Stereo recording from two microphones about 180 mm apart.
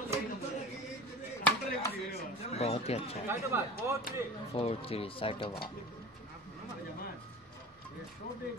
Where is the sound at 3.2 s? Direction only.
15° right (ahead or behind).